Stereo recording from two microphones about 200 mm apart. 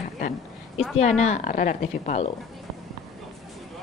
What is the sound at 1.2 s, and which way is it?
A woman's voice, 35° left (ahead or behind).